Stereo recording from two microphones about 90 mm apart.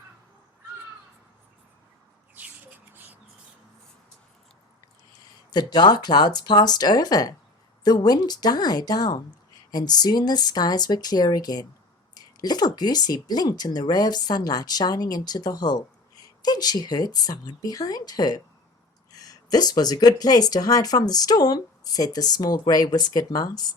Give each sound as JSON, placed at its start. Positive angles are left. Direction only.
{"t": 2.3, "sound": "mouse", "side_deg": -15}
{"t": 5.1, "sound": "speech", "side_deg": 50}